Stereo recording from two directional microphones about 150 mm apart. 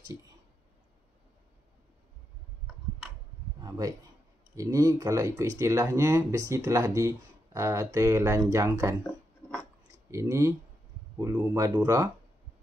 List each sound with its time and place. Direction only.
3.6 s a man's voice: 25° right (ahead or behind)
9.0 s a sound: 5° left (ahead or behind)
10.1 s speech: 20° right (ahead or behind)